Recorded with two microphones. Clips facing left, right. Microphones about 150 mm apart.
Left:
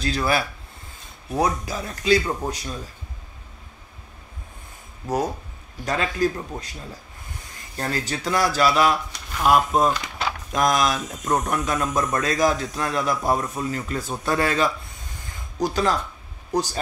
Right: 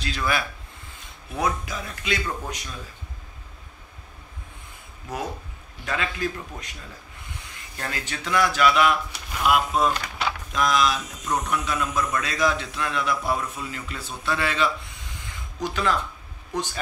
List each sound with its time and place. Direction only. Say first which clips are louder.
0.0 s speech: left 4 dB; 40° left (ahead or behind)
5.0 s speech: left 7 dB; 40° left (ahead or behind)